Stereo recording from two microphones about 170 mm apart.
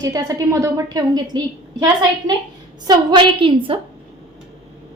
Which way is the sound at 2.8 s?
25° right (ahead or behind).